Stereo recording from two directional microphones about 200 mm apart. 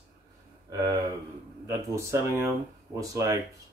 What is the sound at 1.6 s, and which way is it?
Speech, 15° right (ahead or behind).